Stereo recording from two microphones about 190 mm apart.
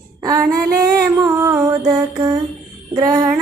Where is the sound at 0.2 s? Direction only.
20° right (ahead or behind).